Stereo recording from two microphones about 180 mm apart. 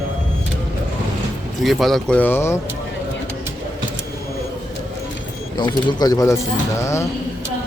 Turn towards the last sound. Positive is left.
turn(degrees=15)  # may be behind; listen again after turning